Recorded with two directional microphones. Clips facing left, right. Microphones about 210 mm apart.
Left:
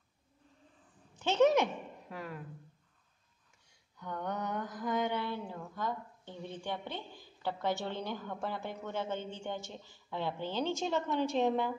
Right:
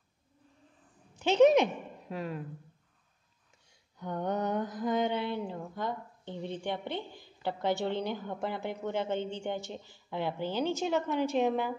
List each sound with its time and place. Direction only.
1.2 s a woman's voice: 15° right (ahead or behind)
4.0 s mantra: 25° right (ahead or behind); by 11.7 s 5° right (ahead or behind)